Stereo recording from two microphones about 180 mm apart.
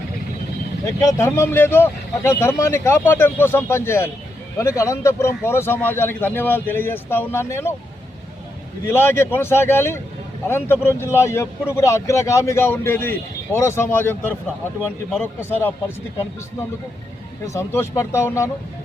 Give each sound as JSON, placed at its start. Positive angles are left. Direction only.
{"t": 1.2, "sound": "speech", "side_deg": 15}
{"t": 8.9, "sound": "speech", "side_deg": 15}
{"t": 17.4, "sound": "speech", "side_deg": 15}